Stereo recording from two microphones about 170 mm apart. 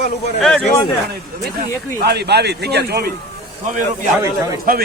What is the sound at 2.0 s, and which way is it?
Speech, 75° right (ahead or behind).